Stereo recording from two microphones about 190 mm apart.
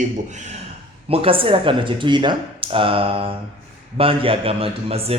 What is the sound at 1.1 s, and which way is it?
Speech, 30° right (ahead or behind).